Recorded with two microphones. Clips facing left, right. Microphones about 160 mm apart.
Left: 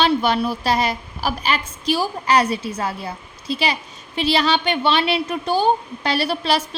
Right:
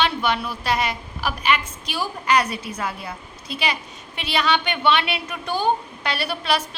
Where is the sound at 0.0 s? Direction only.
35° left (ahead or behind).